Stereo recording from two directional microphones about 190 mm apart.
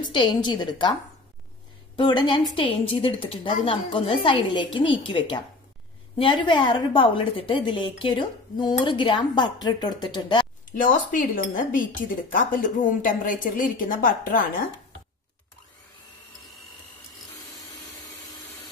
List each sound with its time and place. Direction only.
0.1 s a woman's voice: 25° left (ahead or behind)
2.0 s a woman's voice: 25° left (ahead or behind)
10.8 s speech: 45° left (ahead or behind)